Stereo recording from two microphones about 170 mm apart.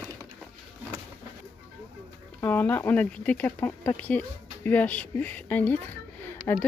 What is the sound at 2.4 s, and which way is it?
Speech, 10° left (ahead or behind).